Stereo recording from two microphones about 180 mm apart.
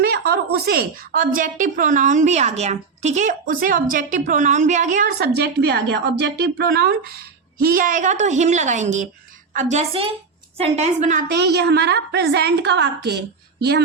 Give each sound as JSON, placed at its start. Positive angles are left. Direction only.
{"t": 0.0, "sound": "a woman's voice", "side_deg": -60}
{"t": 5.0, "sound": "a woman's voice", "side_deg": -60}
{"t": 11.3, "sound": "a woman's voice", "side_deg": -65}